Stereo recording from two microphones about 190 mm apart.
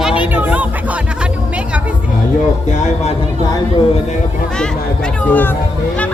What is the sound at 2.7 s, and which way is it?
Music, 35° left (ahead or behind).